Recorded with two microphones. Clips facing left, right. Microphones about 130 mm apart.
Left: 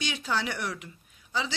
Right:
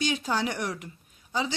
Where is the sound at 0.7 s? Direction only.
40° right (ahead or behind).